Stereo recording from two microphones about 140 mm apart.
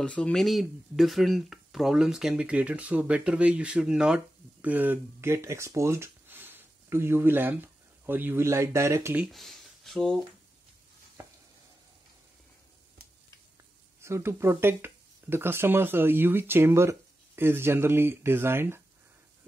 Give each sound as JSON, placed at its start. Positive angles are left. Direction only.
{"t": 0.0, "sound": "speech", "side_deg": 5}
{"t": 9.2, "sound": "speech", "side_deg": 0}
{"t": 14.0, "sound": "speech", "side_deg": -20}